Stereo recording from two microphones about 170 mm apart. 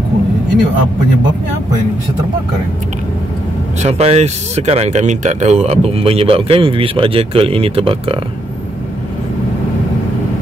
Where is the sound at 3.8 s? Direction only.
40° right (ahead or behind).